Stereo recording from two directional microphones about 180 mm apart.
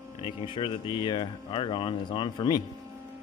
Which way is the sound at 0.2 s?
30° left (ahead or behind).